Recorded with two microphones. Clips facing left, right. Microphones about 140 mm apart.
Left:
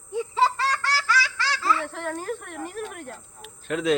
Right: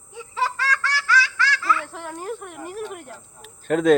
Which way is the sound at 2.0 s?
15° right (ahead or behind).